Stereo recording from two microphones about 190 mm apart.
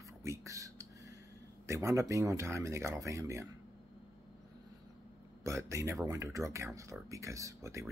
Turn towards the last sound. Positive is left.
turn(degrees=-15)  # may be behind; listen again after turning